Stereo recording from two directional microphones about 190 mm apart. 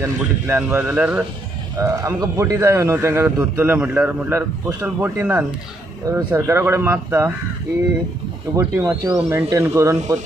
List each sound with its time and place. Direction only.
0.0 s a man's voice: 10° right (ahead or behind)
8.5 s a man's voice: 15° right (ahead or behind)